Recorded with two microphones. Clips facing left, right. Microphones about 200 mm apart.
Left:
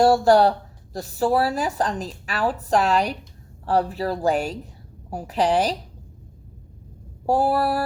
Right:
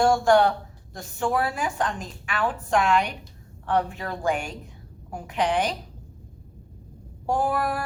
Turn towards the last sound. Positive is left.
turn(degrees=35)  # may be behind; listen again after turning